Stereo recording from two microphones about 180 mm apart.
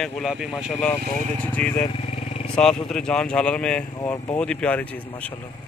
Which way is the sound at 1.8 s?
35° left (ahead or behind).